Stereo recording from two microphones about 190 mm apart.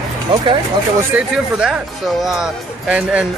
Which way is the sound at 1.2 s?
5° right (ahead or behind).